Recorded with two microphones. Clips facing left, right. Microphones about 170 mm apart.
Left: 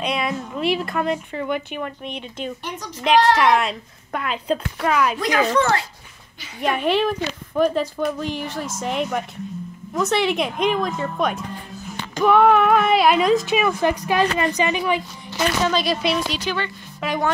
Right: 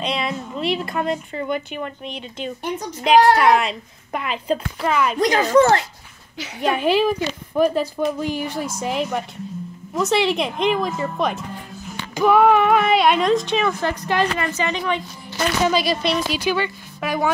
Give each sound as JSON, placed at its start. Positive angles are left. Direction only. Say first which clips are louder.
{"t": 0.0, "sound": "speech", "louder": "left 1 dB", "side_deg": 0}
{"t": 5.2, "sound": "speech", "louder": "right 4 dB", "side_deg": -40}
{"t": 6.6, "sound": "speech", "louder": "right 2 dB", "side_deg": -5}
{"t": 15.6, "sound": "speech", "louder": "right 3 dB", "side_deg": -5}